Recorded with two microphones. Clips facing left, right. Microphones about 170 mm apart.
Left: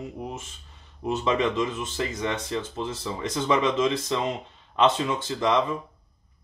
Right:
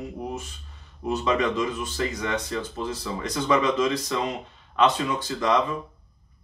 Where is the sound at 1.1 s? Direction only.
25° left (ahead or behind).